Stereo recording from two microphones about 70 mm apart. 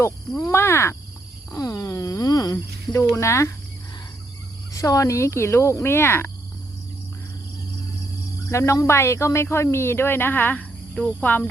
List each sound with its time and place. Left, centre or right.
0.4 s frog: left
1.5 s speech: left
1.9 s a sound: left
3.2 s speech: left
4.7 s speech: left
5.8 s frog: left
8.4 s speech: left